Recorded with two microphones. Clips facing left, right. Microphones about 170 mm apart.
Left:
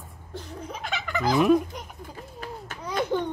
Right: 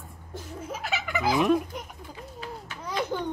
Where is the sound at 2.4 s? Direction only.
50° left (ahead or behind).